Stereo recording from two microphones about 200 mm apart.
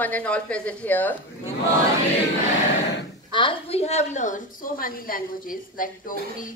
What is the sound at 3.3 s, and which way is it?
A woman's voice, 25° left (ahead or behind).